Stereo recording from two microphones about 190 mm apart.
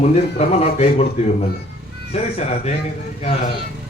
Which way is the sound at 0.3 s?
35° left (ahead or behind).